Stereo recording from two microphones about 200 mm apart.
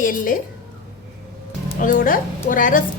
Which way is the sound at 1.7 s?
45° left (ahead or behind).